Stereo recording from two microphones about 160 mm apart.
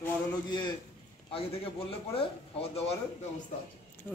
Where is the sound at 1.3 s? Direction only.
35° left (ahead or behind).